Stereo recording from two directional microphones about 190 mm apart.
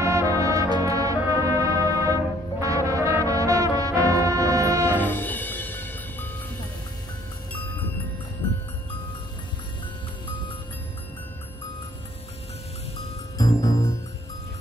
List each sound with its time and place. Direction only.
0.0 s music: 15° right (ahead or behind)
3.8 s brass instrument: 20° right (ahead or behind)
4.8 s music: 10° left (ahead or behind)
13.4 s music: 20° left (ahead or behind)